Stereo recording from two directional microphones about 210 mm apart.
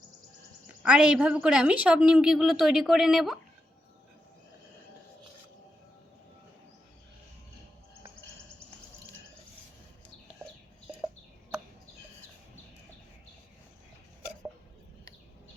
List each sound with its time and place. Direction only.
0.8 s a woman's voice: 5° right (ahead or behind)